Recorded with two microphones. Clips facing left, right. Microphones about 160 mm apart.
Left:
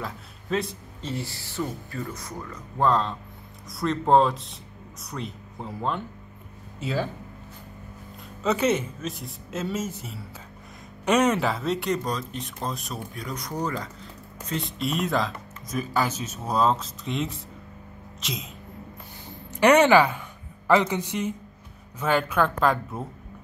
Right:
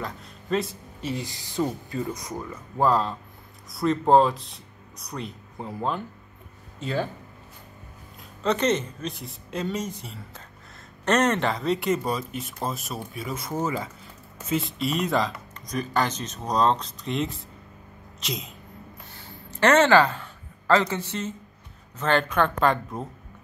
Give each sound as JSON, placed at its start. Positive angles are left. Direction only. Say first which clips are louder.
{"t": 0.0, "sound": "a man's voice", "louder": "right 1 dB", "side_deg": 0}
{"t": 1.0, "sound": "speech", "louder": "right 1 dB", "side_deg": -15}
{"t": 8.4, "sound": "speech", "louder": "even", "side_deg": 5}
{"t": 19.2, "sound": "speech", "louder": "left 2 dB", "side_deg": 15}